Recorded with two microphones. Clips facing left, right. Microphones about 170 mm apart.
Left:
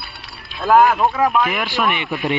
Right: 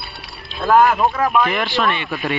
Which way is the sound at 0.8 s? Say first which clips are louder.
Left 1 dB; centre (ahead or behind).